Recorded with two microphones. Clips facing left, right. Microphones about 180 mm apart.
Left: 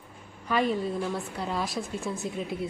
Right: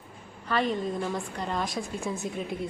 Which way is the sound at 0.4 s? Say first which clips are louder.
Left 1 dB; 10° left (ahead or behind).